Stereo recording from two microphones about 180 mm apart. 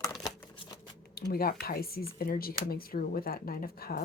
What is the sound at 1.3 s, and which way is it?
Speech, 55° left (ahead or behind).